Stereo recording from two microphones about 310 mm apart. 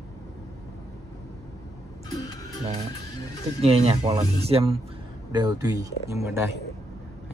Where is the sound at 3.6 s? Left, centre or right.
Centre.